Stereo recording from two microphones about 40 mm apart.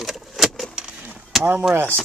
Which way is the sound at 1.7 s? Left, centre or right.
Right.